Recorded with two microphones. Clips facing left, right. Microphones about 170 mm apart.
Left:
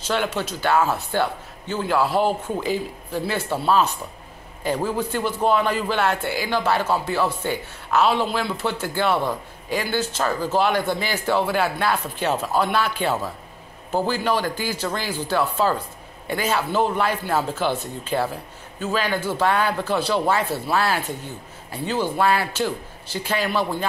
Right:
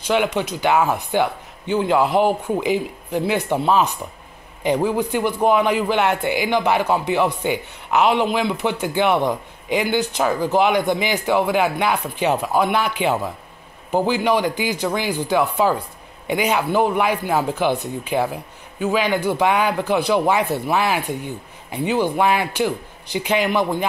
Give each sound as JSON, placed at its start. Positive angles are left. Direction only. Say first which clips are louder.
{"t": 0.0, "sound": "a man's voice", "louder": "right 4 dB", "side_deg": -15}